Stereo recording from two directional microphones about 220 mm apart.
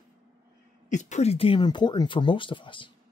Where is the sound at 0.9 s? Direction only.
30° left (ahead or behind).